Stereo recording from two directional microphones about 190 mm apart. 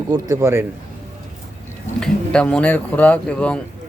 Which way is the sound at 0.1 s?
15° right (ahead or behind).